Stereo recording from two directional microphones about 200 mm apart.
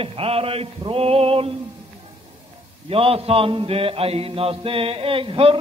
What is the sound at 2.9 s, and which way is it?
Mantra, 30° right (ahead or behind).